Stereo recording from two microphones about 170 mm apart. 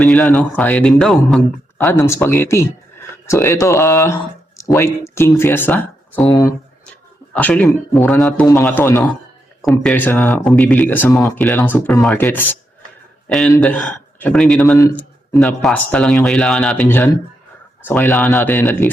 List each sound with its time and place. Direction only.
0.0 s speech: 10° left (ahead or behind)
1.8 s speech: 15° left (ahead or behind)
14.8 s a sound: 20° left (ahead or behind)
15.4 s speech: 5° left (ahead or behind)